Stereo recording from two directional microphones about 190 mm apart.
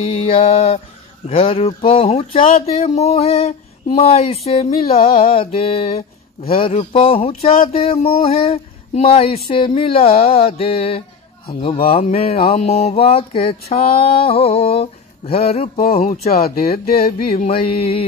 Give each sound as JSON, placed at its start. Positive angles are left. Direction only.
{"t": 0.0, "sound": "speech", "side_deg": 30}
{"t": 16.2, "sound": "music", "side_deg": 55}
{"t": 17.6, "sound": "speech", "side_deg": 30}